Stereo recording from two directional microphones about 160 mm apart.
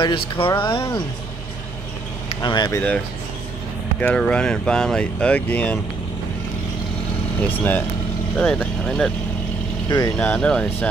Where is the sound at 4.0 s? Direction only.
5° left (ahead or behind).